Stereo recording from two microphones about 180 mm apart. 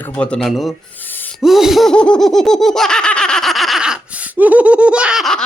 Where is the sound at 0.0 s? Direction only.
5° left (ahead or behind).